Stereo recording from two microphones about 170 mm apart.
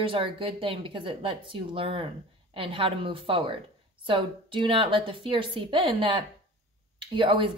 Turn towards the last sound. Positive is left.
turn(degrees=-30)  # may be behind; listen again after turning